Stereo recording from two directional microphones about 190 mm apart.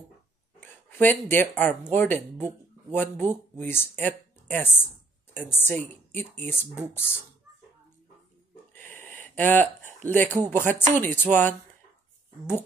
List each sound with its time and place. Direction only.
0.6 s speech: 10° left (ahead or behind)
8.7 s speech: 10° left (ahead or behind)